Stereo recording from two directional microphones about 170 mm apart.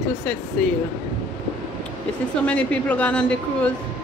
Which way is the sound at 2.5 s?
5° left (ahead or behind).